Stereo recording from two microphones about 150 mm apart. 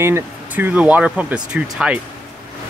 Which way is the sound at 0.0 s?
15° right (ahead or behind).